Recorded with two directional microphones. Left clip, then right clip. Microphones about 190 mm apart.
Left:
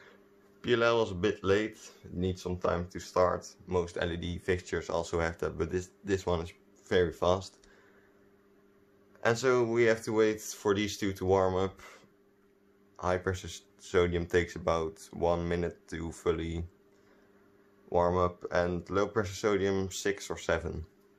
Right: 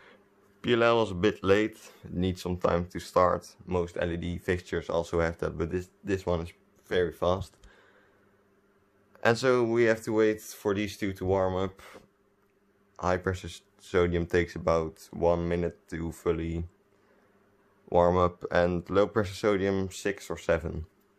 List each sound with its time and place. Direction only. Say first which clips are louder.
0.0 s speech: right 1 dB; 35° right (ahead or behind)
2.1 s speech: right 2 dB; 50° right (ahead or behind); by 7.5 s 15° right (ahead or behind)
9.2 s speech: right 3 dB; 30° right (ahead or behind)
17.8 s speech: right 4 dB; 35° right (ahead or behind)